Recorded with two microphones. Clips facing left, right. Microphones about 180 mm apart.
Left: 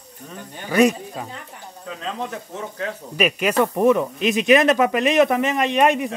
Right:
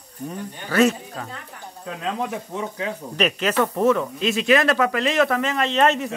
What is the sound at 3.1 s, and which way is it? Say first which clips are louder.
Speech: left 2 dB; 10° left (ahead or behind).